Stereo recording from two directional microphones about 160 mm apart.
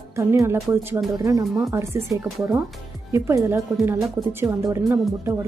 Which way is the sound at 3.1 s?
20° right (ahead or behind).